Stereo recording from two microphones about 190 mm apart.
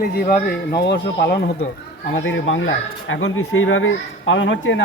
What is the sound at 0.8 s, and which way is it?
Speech, 60° left (ahead or behind).